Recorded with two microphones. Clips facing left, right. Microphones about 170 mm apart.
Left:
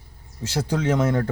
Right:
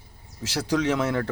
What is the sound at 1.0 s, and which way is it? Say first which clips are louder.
Speech: left 3 dB; centre (ahead or behind).